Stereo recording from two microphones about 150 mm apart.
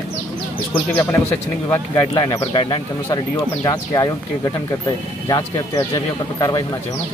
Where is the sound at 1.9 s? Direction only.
25° left (ahead or behind).